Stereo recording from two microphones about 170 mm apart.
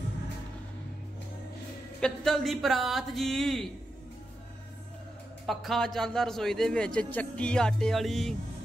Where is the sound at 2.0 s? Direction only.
5° left (ahead or behind).